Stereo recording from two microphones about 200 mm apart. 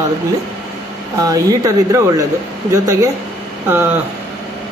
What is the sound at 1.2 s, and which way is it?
Speech, 15° right (ahead or behind).